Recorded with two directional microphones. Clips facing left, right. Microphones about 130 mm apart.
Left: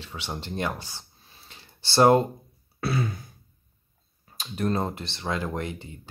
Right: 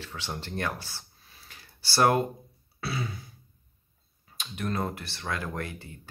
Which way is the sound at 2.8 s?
50° left (ahead or behind).